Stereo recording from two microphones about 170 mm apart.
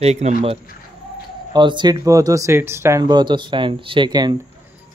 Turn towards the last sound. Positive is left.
turn(degrees=-25)  # may be behind; listen again after turning